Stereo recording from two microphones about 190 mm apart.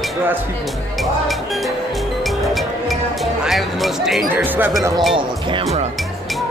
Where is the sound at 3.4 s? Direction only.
Centre (ahead or behind).